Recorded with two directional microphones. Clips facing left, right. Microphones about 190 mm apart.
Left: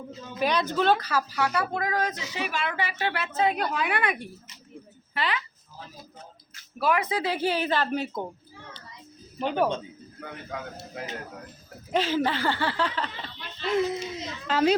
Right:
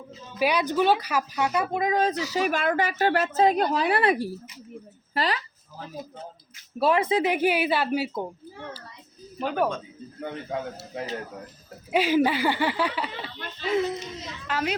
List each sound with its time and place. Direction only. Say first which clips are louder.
0.3 s speech: right 2 dB; 10° right (ahead or behind); by 2.2 s 30° right (ahead or behind)
2.3 s a woman's voice: right 7 dB; 45° right (ahead or behind)
6.7 s speech: right 4 dB; 30° right (ahead or behind); by 8.3 s 5° right (ahead or behind)
9.4 s speech: even; centre (ahead or behind)
10.2 s a man's voice: right 6 dB; 30° right (ahead or behind)
11.9 s speech: right 4 dB; 10° right (ahead or behind)
14.4 s a woman's voice: left 6 dB; 30° left (ahead or behind)